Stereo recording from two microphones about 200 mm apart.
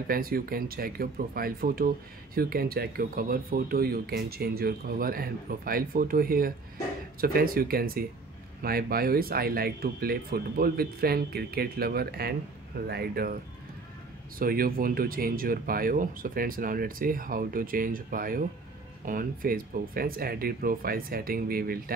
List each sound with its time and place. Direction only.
0.1 s speech: 45° right (ahead or behind)
14.4 s speech: 45° right (ahead or behind)